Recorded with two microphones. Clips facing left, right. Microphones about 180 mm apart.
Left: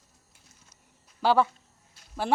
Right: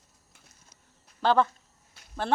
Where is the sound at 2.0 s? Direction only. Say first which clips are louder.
Right 3 dB; 65° right (ahead or behind).